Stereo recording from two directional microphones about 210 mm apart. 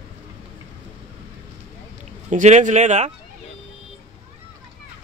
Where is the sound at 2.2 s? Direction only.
35° right (ahead or behind).